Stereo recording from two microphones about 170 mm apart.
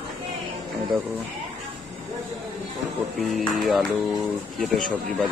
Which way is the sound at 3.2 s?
Centre (ahead or behind).